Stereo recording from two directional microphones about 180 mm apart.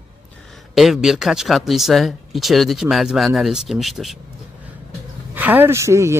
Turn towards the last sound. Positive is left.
turn(degrees=-15)  # may be behind; listen again after turning